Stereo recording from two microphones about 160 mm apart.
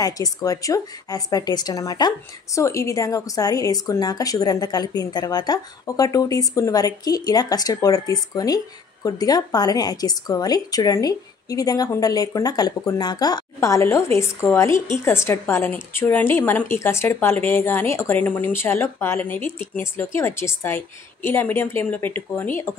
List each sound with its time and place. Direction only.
0.0 s a woman's voice: 20° left (ahead or behind)